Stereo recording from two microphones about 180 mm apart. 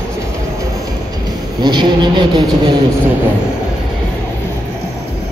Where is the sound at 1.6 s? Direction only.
25° right (ahead or behind).